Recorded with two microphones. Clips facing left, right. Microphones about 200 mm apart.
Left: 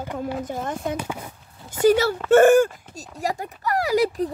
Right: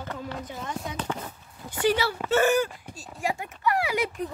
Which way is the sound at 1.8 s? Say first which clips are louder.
Left 7 dB; 45° left (ahead or behind).